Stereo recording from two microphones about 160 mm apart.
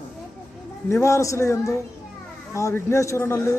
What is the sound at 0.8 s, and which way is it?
Speech, 15° left (ahead or behind).